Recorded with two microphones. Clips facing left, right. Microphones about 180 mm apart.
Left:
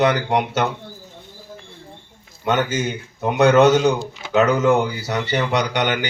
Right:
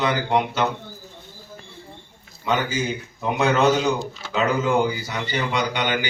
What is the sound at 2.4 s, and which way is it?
A man's voice, 60° left (ahead or behind).